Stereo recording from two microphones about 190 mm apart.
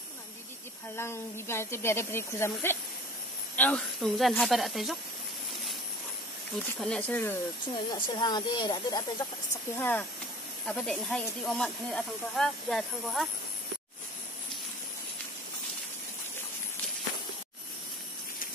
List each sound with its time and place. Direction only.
0.9 s speech: 15° left (ahead or behind)
6.8 s speech: 5° left (ahead or behind)
7.7 s speech: 20° left (ahead or behind)
9.8 s speech: 10° left (ahead or behind)